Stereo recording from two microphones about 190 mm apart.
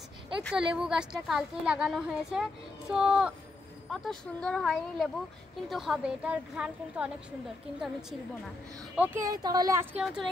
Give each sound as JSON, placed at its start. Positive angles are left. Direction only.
{"t": 0.4, "sound": "a woman's voice", "side_deg": 0}
{"t": 8.9, "sound": "speech", "side_deg": -10}
{"t": 9.9, "sound": "a woman's voice", "side_deg": 0}